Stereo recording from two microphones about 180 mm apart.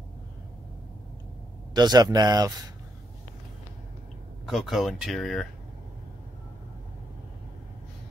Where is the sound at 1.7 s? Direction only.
25° right (ahead or behind).